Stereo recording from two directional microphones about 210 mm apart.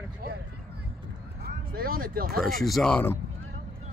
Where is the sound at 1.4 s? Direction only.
45° right (ahead or behind).